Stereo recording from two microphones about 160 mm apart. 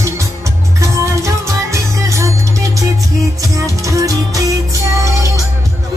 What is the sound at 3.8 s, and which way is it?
Music, 20° right (ahead or behind).